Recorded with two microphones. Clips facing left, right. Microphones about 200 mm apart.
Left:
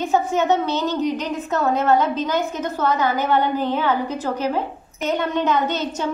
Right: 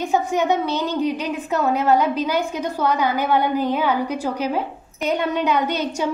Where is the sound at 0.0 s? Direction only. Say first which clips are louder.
Even; 15° right (ahead or behind).